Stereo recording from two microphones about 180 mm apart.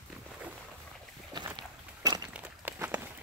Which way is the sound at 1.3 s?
25° right (ahead or behind).